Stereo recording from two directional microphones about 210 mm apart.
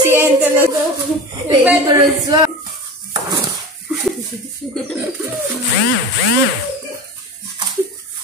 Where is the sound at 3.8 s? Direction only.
Centre (ahead or behind).